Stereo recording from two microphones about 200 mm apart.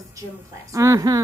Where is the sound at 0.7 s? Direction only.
15° right (ahead or behind).